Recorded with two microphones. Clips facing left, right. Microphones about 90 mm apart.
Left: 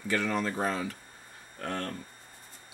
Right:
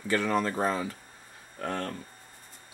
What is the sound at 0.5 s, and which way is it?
Speech, 30° right (ahead or behind).